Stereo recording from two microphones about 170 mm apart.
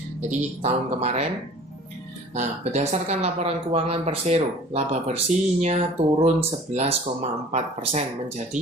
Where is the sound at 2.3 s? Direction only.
45° right (ahead or behind).